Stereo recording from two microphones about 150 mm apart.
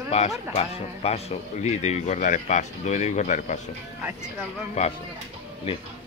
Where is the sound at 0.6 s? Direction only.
45° left (ahead or behind).